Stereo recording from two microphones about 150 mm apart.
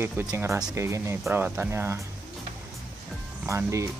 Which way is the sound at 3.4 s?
15° right (ahead or behind).